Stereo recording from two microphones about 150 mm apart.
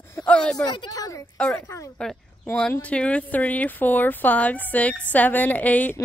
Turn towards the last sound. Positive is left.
turn(degrees=10)  # may be behind; listen again after turning